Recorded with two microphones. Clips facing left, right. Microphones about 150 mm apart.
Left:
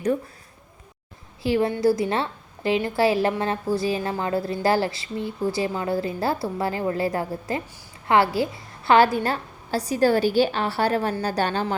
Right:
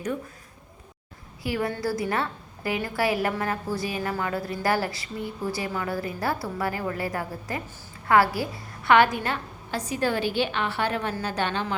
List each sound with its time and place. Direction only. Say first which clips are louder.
1.4 s a woman's voice: left 6 dB; 25° left (ahead or behind)